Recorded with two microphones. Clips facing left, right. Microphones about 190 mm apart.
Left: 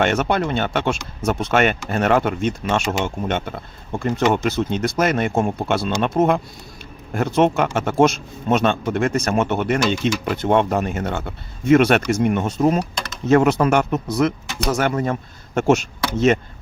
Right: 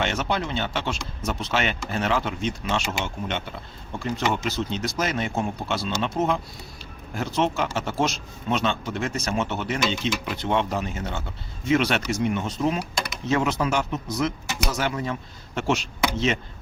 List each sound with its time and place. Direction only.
0.0 s speech: 55° left (ahead or behind)